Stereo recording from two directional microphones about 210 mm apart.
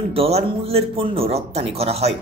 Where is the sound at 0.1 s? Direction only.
30° right (ahead or behind).